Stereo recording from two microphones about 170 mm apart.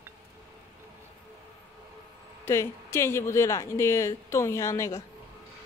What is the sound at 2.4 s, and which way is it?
Speech, 15° left (ahead or behind).